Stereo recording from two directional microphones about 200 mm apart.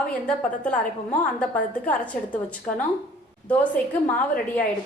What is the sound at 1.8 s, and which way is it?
A woman's voice, 5° left (ahead or behind).